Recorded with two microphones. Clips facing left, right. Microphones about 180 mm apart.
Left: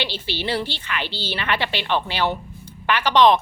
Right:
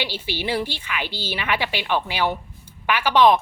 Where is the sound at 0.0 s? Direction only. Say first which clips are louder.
Even; 10° right (ahead or behind).